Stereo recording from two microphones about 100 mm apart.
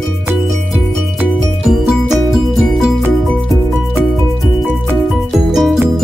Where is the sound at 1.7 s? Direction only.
5° right (ahead or behind).